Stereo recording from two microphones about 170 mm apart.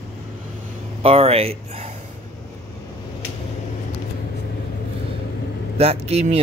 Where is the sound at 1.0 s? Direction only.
35° right (ahead or behind).